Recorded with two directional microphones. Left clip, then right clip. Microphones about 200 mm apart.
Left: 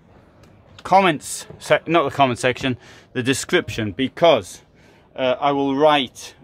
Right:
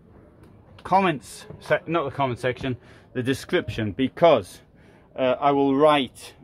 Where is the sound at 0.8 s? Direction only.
25° left (ahead or behind).